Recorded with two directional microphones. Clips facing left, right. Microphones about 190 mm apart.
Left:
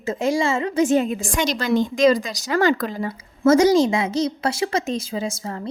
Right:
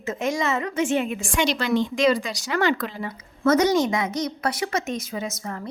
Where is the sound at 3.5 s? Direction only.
30° left (ahead or behind).